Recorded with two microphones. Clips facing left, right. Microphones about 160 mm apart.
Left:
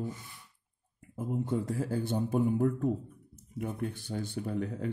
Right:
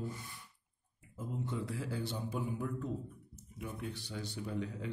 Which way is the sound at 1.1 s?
50° left (ahead or behind).